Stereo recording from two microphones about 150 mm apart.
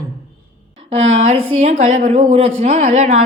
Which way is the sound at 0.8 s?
50° right (ahead or behind).